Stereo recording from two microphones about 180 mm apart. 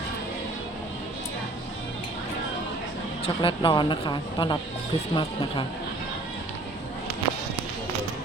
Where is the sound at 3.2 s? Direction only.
30° left (ahead or behind).